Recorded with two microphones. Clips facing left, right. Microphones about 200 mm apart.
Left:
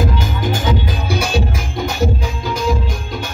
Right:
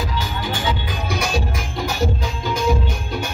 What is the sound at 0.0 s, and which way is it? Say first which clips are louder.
Music: left 6 dB; 45° left (ahead or behind).